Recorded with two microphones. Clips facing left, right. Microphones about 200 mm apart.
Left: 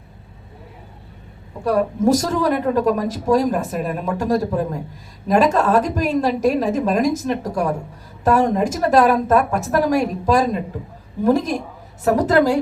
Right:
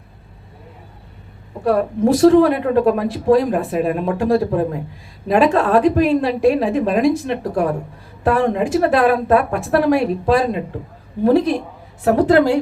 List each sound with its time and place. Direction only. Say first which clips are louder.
1.6 s a woman's voice: right 1 dB; 40° left (ahead or behind)